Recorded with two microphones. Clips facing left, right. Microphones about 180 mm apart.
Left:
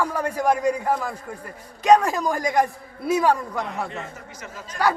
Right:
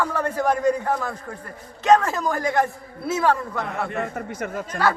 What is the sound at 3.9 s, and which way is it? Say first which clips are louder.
Speech: right 8 dB; 55° right (ahead or behind).